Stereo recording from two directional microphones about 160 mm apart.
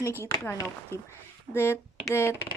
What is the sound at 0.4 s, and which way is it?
Speech, 15° left (ahead or behind).